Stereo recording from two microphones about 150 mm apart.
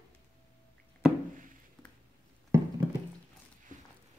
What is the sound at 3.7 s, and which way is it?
Walk, 60° right (ahead or behind).